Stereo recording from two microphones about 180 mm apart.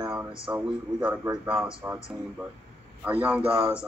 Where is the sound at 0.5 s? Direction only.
15° right (ahead or behind).